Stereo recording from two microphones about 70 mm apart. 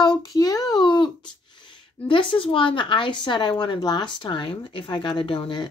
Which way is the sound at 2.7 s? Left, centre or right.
Left.